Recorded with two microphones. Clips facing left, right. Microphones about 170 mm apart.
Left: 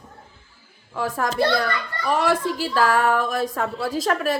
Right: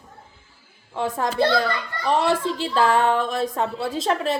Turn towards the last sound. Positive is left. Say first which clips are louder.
# even
turn(degrees=-25)  # may be behind; listen again after turning